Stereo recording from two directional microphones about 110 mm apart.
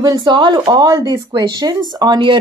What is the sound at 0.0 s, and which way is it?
Speech, 45° right (ahead or behind).